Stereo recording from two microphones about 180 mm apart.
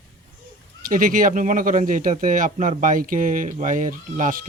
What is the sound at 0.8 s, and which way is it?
Speech, 50° right (ahead or behind).